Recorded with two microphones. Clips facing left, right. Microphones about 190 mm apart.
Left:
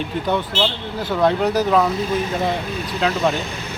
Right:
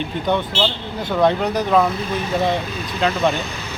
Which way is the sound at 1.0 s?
5° left (ahead or behind).